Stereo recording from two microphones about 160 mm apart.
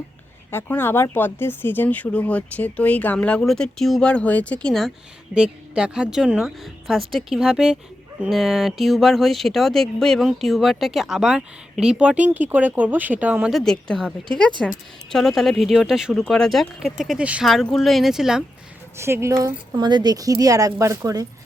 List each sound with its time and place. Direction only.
0.5 s speech: 15° left (ahead or behind); by 18.4 s 5° right (ahead or behind)
18.9 s speech: 15° right (ahead or behind)